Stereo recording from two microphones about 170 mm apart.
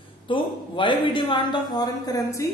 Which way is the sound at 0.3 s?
30° left (ahead or behind).